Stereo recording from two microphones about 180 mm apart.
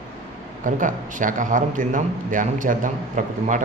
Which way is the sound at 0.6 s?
45° right (ahead or behind).